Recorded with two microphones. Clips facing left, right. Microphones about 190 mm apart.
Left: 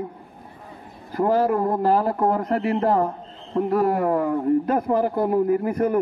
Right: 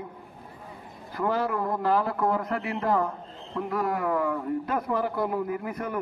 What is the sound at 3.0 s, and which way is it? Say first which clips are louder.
A man's voice: left 5 dB; 35° left (ahead or behind).